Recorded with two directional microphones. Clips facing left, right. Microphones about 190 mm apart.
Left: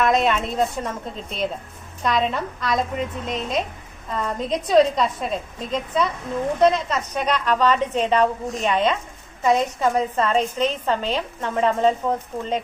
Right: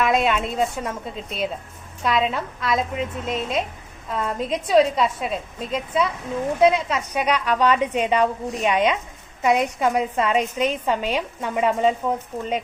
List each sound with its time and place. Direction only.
0.0 s a woman's voice: 5° right (ahead or behind)